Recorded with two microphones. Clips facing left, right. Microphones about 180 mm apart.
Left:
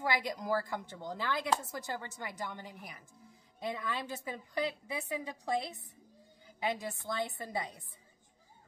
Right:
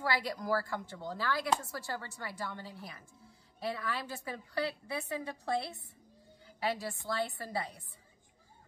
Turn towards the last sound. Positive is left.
turn(degrees=20)  # may be behind; listen again after turning